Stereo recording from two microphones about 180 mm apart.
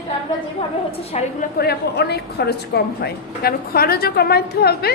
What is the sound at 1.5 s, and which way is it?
A woman's voice, 65° left (ahead or behind).